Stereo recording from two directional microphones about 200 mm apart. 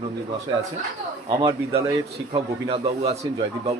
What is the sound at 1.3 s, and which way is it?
Speech, 15° right (ahead or behind).